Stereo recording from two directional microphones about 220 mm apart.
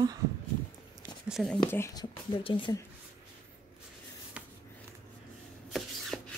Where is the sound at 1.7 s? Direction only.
15° left (ahead or behind).